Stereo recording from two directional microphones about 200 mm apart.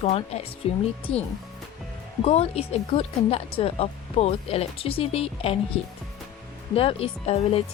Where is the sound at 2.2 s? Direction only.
30° left (ahead or behind).